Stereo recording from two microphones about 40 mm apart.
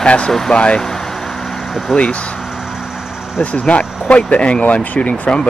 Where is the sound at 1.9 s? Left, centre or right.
Left.